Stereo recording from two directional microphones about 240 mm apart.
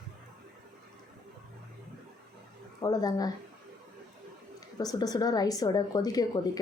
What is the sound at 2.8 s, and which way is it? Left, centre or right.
Speech, centre.